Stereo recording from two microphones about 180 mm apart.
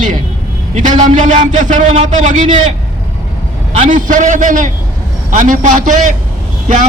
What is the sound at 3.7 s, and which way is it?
A man's voice, 45° right (ahead or behind).